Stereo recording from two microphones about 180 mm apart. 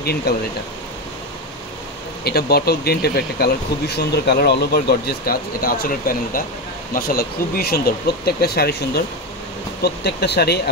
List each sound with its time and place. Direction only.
0.0 s speech: 60° left (ahead or behind)
2.2 s speech: 60° left (ahead or behind)